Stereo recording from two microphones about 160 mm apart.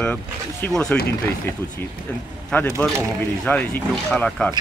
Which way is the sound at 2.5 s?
10° left (ahead or behind).